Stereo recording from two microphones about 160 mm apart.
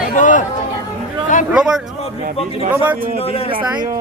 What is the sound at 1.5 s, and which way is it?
Speech, 5° right (ahead or behind).